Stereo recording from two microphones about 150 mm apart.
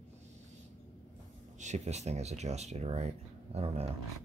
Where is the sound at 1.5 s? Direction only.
50° right (ahead or behind).